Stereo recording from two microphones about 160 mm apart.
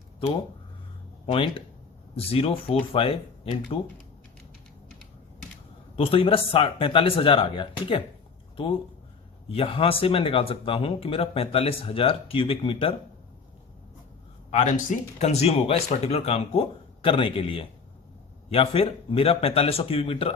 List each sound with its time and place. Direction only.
1.3 s speech: 35° left (ahead or behind)
6.0 s speech: 35° left (ahead or behind)
9.5 s speech: 35° left (ahead or behind)
14.5 s speech: 45° left (ahead or behind)